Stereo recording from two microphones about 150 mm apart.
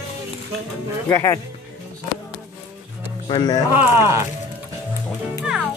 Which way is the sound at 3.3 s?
30° left (ahead or behind).